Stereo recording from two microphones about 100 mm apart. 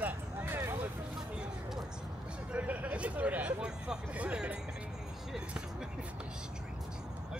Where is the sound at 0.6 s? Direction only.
30° right (ahead or behind).